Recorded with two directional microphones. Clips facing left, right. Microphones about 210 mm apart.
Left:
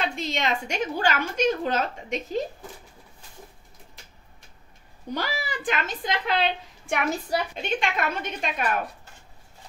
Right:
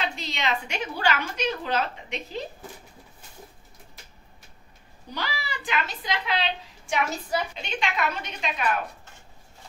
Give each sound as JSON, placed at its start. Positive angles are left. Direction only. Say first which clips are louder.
{"t": 0.0, "sound": "a woman's voice", "louder": "left 3 dB", "side_deg": 50}
{"t": 5.1, "sound": "a woman's voice", "louder": "left 4 dB", "side_deg": 50}